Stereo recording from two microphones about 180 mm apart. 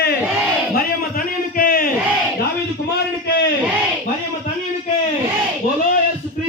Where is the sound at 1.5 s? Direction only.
50° left (ahead or behind).